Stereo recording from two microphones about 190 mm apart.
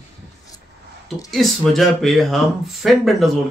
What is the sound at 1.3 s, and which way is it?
Speech, centre (ahead or behind).